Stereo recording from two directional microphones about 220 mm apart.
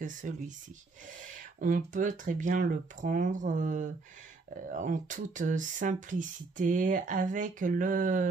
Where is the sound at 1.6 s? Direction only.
35° right (ahead or behind).